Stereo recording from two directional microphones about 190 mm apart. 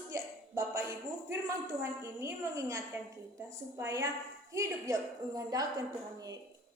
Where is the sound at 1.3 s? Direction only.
15° right (ahead or behind).